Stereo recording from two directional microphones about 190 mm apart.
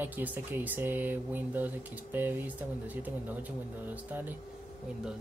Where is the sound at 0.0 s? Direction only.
10° right (ahead or behind).